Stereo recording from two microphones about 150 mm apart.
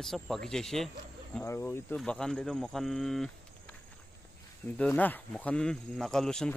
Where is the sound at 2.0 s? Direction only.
5° left (ahead or behind).